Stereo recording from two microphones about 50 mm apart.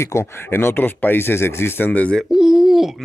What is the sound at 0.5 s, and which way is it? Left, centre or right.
Speech, left.